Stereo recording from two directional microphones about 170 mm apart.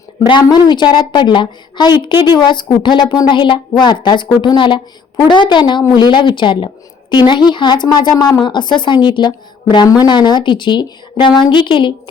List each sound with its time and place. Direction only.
0.3 s a woman's voice: 25° left (ahead or behind)